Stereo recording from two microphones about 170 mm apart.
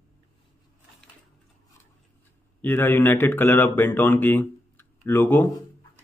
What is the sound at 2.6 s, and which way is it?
Speech, 10° left (ahead or behind).